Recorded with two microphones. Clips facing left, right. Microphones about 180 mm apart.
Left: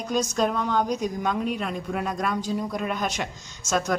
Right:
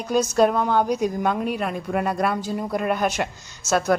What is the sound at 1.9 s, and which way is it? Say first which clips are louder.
Speech: right 5 dB; 60° right (ahead or behind).